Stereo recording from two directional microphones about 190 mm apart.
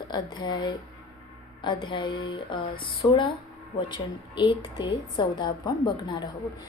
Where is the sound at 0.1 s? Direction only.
25° left (ahead or behind).